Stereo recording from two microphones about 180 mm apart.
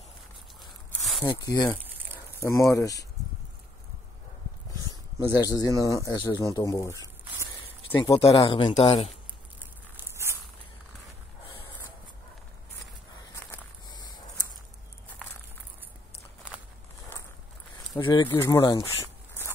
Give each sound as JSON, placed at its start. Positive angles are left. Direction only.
{"t": 1.2, "sound": "speech", "side_deg": 25}
{"t": 5.3, "sound": "speech", "side_deg": 20}
{"t": 8.6, "sound": "speech", "side_deg": 35}
{"t": 9.9, "sound": "walk", "side_deg": -15}
{"t": 17.9, "sound": "speech", "side_deg": 5}
{"t": 18.6, "sound": "a sound", "side_deg": 25}